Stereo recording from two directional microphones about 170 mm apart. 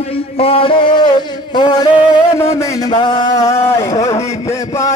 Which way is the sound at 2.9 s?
25° left (ahead or behind).